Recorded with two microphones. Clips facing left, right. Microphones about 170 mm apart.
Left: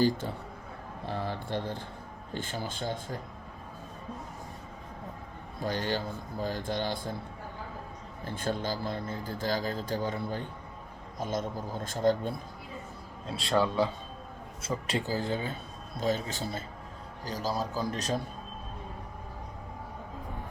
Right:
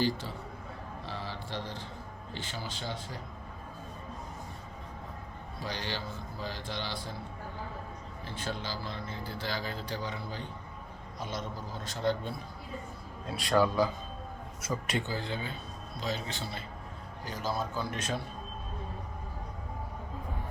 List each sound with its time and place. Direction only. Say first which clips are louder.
0.0 s speech: left 4 dB; 50° left (ahead or behind)
1.0 s a sound: left 7 dB; 55° left (ahead or behind)
2.3 s speech: left 5 dB; 50° left (ahead or behind)
5.5 s speech: left 6 dB; 50° left (ahead or behind)
8.2 s speech: left 6 dB; 50° left (ahead or behind)
13.2 s speech: right 1 dB; 25° left (ahead or behind)